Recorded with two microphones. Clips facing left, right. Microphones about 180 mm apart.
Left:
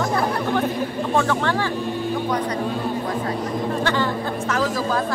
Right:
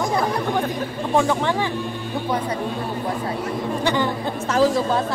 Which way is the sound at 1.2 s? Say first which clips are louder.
Right 2 dB; 15° right (ahead or behind).